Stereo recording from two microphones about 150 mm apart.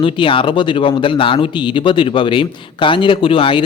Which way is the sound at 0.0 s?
35° left (ahead or behind).